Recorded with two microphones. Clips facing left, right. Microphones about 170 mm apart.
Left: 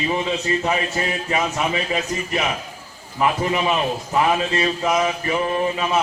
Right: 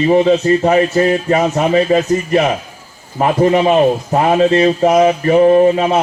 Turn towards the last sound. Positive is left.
turn(degrees=-45)  # may be behind; listen again after turning